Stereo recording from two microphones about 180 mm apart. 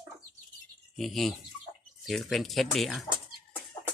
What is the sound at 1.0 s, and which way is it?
Speech, centre (ahead or behind).